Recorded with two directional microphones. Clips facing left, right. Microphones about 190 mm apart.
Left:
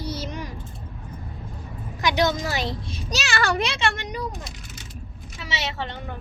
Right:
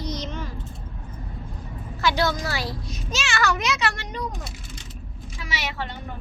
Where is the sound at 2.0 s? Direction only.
20° left (ahead or behind).